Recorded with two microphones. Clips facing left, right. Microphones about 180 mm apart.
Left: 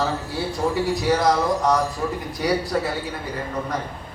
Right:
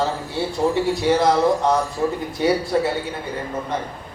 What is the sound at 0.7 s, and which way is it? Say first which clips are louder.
Speech: right 1 dB; 25° right (ahead or behind).